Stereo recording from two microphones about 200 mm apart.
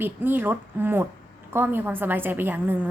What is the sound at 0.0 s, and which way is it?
A woman's voice, 10° right (ahead or behind).